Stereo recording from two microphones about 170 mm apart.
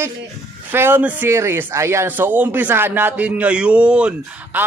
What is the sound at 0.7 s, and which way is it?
Speech, 10° right (ahead or behind).